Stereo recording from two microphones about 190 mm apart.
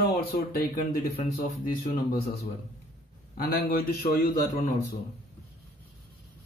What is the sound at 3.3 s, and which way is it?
A man's voice, 50° left (ahead or behind).